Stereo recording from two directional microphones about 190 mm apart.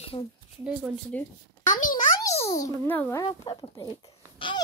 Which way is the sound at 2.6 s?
15° left (ahead or behind).